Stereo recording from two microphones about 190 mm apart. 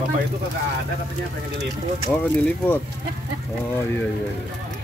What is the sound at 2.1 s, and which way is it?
Speech, 10° left (ahead or behind).